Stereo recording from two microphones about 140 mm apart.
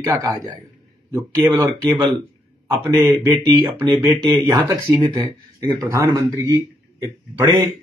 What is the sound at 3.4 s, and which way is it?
Speech, 25° right (ahead or behind).